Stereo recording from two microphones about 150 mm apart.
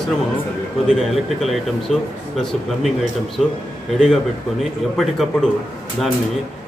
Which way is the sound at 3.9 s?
Centre (ahead or behind).